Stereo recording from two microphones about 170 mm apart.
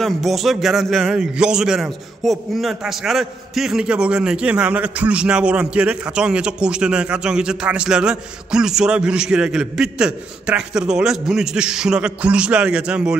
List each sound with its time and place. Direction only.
0.0 s a man's voice: centre (ahead or behind)